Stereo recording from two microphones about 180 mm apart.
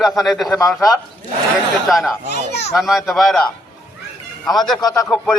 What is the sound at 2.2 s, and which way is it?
Speech, 70° left (ahead or behind).